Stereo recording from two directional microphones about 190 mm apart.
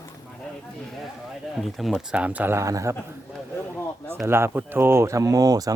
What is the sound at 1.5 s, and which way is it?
Speech, centre (ahead or behind).